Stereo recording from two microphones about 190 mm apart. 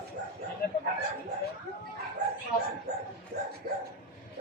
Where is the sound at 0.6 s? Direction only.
55° left (ahead or behind).